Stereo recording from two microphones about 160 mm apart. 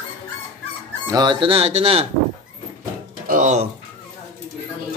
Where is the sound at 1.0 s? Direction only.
25° right (ahead or behind).